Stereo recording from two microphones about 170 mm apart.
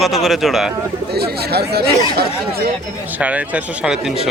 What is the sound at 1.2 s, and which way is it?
Speech, 70° right (ahead or behind).